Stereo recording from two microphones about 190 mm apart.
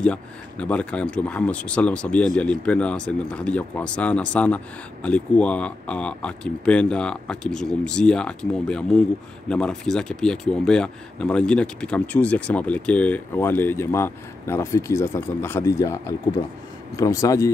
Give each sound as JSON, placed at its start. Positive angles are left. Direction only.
{"t": 0.0, "sound": "speech", "side_deg": 5}